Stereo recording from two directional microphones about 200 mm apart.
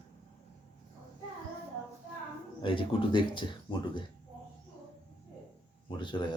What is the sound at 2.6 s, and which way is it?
Speech, 25° left (ahead or behind).